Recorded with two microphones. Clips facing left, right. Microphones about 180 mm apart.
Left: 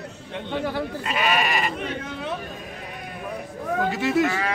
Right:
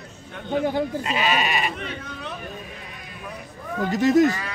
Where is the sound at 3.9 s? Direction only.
40° right (ahead or behind).